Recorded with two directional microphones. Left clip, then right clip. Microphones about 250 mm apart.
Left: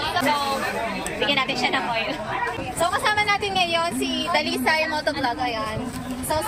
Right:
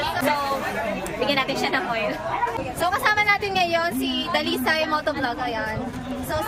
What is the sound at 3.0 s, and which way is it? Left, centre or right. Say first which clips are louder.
Speech: right 4 dB; centre.